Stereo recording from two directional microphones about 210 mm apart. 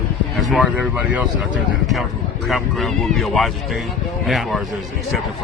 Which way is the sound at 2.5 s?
Centre (ahead or behind).